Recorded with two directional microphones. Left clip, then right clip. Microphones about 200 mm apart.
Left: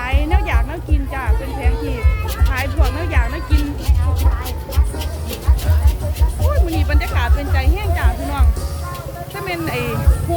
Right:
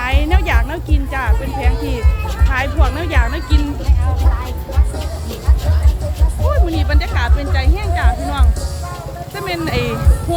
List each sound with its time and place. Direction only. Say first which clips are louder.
0.0 s music: right 3 dB; 20° right (ahead or behind)
2.5 s speech: right 4 dB; 20° right (ahead or behind)
6.5 s speech: right 3 dB; 10° right (ahead or behind)
9.5 s speech: right 3 dB; 15° right (ahead or behind)